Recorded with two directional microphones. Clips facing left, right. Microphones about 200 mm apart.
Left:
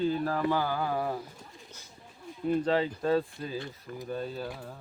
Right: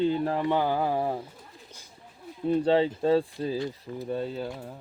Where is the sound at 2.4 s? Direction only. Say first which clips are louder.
Right 4 dB; 30° right (ahead or behind).